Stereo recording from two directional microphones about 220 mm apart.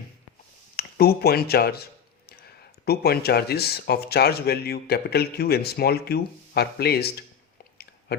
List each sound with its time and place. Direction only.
0.8 s speech: 45° left (ahead or behind)